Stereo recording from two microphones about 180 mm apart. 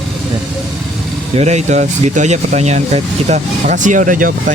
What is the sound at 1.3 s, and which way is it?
Speech, 40° right (ahead or behind).